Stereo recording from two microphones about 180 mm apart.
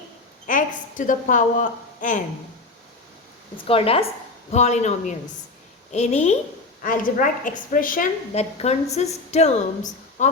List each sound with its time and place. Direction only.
0.4 s a woman's voice: 45° left (ahead or behind)
3.6 s a woman's voice: 30° left (ahead or behind)
6.8 s a woman's voice: 50° left (ahead or behind)
8.4 s a woman's voice: 35° left (ahead or behind)